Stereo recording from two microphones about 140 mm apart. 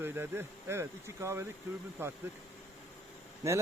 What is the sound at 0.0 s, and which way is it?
Speech, 15° right (ahead or behind).